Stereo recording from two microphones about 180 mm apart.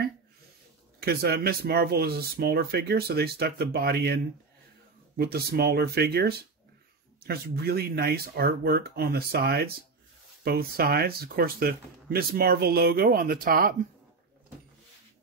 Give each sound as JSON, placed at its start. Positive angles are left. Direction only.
{"t": 0.9, "sound": "speech", "side_deg": -60}